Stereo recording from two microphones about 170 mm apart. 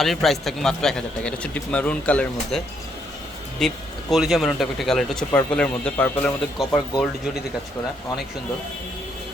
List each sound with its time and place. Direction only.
0.0 s speech: centre (ahead or behind)
3.6 s speech: centre (ahead or behind)